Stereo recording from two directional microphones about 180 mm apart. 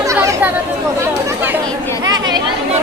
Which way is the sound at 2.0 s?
20° right (ahead or behind).